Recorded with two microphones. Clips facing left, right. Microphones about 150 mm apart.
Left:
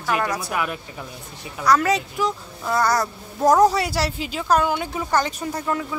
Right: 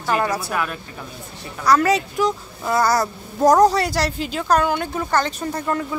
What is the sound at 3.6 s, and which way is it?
Speech, 5° left (ahead or behind).